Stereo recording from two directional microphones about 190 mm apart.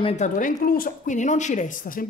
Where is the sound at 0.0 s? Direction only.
40° left (ahead or behind).